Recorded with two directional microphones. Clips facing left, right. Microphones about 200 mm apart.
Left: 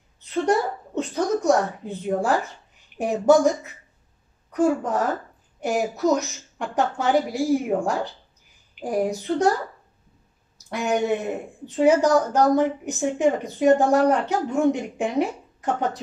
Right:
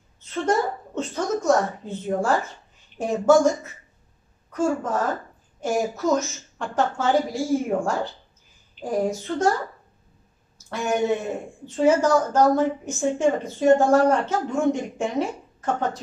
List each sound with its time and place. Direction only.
0.2 s a woman's voice: 15° left (ahead or behind)
10.7 s a woman's voice: 15° left (ahead or behind)